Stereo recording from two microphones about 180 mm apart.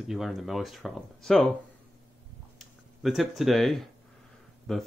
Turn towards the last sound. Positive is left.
turn(degrees=5)  # may be behind; listen again after turning